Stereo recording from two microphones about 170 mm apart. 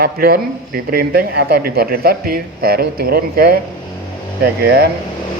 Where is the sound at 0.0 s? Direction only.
65° right (ahead or behind).